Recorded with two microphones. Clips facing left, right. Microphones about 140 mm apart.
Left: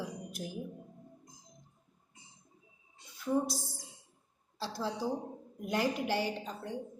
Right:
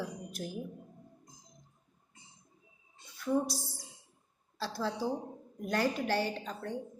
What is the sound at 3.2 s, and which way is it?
A woman's voice, 20° left (ahead or behind).